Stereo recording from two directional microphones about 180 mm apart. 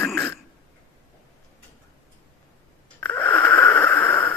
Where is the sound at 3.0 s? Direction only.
10° left (ahead or behind).